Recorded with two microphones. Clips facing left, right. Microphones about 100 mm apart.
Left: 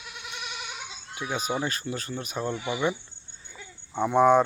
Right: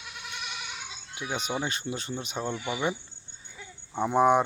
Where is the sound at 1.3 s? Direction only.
25° right (ahead or behind).